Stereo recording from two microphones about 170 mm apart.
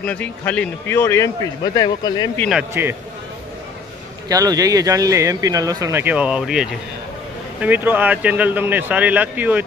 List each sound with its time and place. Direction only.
0.0 s a man's voice: 10° left (ahead or behind); by 2.2 s 25° left (ahead or behind)
2.7 s speech: 15° right (ahead or behind)
4.3 s speech: 20° right (ahead or behind)